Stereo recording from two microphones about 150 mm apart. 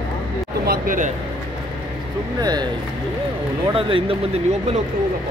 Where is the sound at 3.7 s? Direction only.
35° right (ahead or behind).